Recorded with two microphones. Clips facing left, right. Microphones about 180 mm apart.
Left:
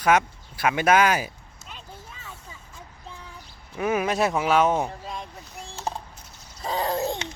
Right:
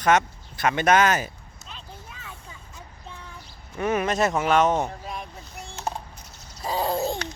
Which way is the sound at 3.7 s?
5° left (ahead or behind).